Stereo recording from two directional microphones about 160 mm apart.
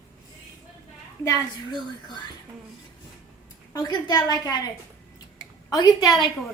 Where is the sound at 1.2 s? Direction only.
25° left (ahead or behind).